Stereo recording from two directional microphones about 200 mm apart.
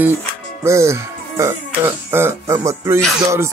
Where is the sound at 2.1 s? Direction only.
10° right (ahead or behind).